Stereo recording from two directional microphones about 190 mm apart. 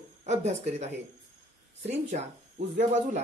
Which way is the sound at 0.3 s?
35° right (ahead or behind).